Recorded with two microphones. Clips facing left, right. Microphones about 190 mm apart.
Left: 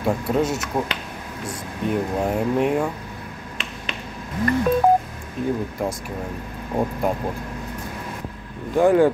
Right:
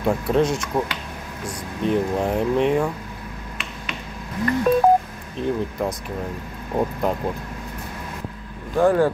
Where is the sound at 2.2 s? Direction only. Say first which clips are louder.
Left 1 dB; 5° left (ahead or behind).